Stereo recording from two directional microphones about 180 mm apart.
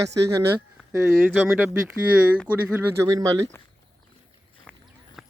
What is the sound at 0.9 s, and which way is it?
Speech, 10° right (ahead or behind).